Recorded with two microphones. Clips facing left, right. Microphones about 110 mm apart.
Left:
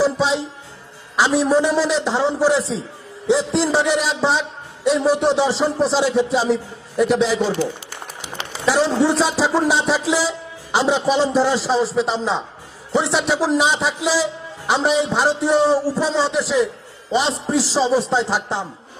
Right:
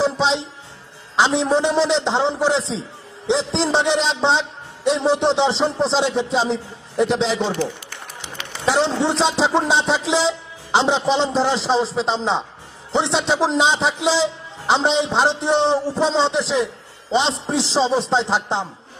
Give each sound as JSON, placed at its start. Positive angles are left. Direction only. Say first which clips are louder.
{"t": 0.0, "sound": "music", "louder": "left 1 dB", "side_deg": -25}
{"t": 1.1, "sound": "a man's voice", "louder": "left 1 dB", "side_deg": -25}
{"t": 8.6, "sound": "a sound", "louder": "left 1 dB", "side_deg": -25}
{"t": 9.0, "sound": "a man's voice", "louder": "left 1 dB", "side_deg": -25}